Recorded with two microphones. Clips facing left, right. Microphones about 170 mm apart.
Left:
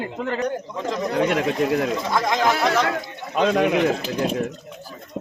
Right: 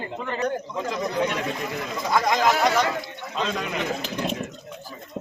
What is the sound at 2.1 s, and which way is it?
Speech, centre (ahead or behind).